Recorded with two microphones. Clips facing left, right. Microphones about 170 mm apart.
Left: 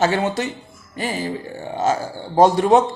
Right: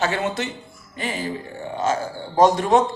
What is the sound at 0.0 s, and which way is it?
Speech, 35° left (ahead or behind).